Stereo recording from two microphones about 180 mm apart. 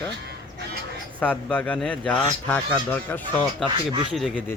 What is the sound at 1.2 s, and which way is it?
Speech, 5° left (ahead or behind).